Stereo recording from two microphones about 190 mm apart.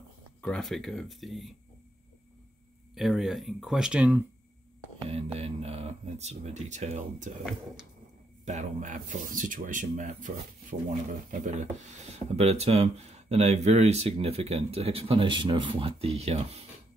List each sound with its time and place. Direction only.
0.4 s speech: 5° left (ahead or behind)
2.9 s speech: centre (ahead or behind)
5.0 s speech: 30° right (ahead or behind)
8.5 s speech: 40° right (ahead or behind)